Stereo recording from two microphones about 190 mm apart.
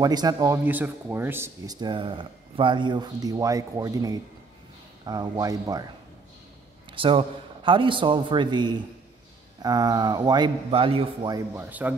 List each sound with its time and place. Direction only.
0.0 s speech: 20° right (ahead or behind)
0.7 s speech: 10° right (ahead or behind)
6.9 s speech: 25° right (ahead or behind)
11.5 s speech: 10° right (ahead or behind)